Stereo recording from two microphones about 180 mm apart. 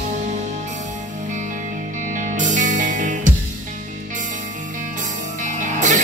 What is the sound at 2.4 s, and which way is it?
Music, 45° right (ahead or behind).